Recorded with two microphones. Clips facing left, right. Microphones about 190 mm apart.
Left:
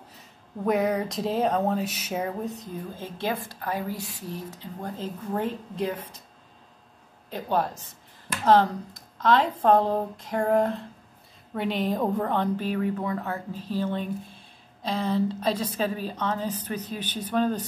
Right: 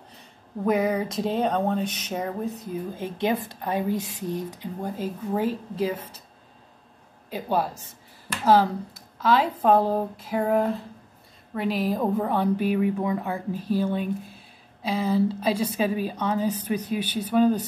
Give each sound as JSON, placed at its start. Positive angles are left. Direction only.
{"t": 0.7, "sound": "speech", "side_deg": 0}
{"t": 2.6, "sound": "a woman's voice", "side_deg": -15}
{"t": 7.2, "sound": "a woman's voice", "side_deg": -10}